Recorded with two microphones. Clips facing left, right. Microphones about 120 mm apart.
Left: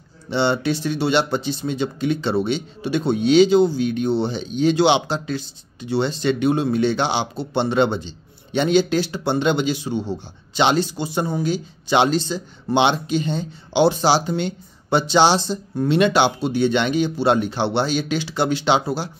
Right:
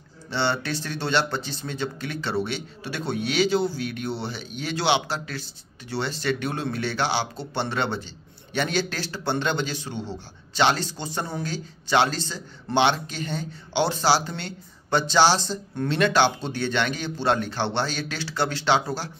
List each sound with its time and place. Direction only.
0.3 s speech: 15° left (ahead or behind)